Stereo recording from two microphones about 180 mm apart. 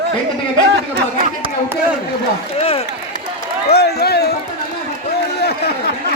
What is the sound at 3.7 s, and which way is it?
Speech, 65° left (ahead or behind).